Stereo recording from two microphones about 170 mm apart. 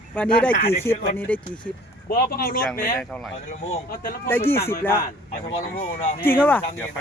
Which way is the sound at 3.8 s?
60° left (ahead or behind).